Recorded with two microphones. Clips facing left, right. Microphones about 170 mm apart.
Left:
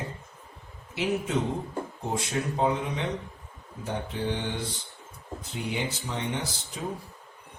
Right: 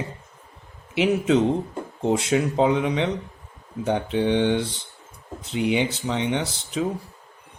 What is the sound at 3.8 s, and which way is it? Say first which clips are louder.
Speech: right 9 dB; 75° right (ahead or behind).